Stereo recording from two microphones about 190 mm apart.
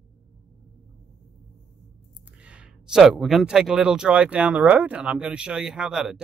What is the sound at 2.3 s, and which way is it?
Speech, 5° right (ahead or behind).